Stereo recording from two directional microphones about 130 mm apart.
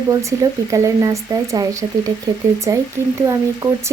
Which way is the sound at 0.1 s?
25° right (ahead or behind).